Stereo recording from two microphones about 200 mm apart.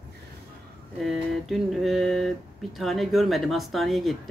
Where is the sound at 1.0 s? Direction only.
Centre (ahead or behind).